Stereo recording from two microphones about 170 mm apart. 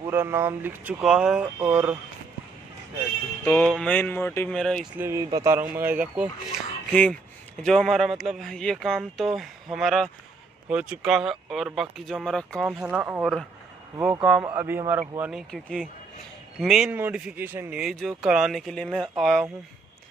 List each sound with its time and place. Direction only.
0.0 s speech: 15° right (ahead or behind)
3.4 s a sound: 10° left (ahead or behind)
4.5 s speech: 5° left (ahead or behind)
4.9 s speech: 15° right (ahead or behind); by 12.7 s centre (ahead or behind)
12.8 s speech: 10° right (ahead or behind)